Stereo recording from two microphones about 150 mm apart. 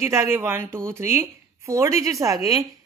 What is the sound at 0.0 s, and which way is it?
Speech, 15° right (ahead or behind).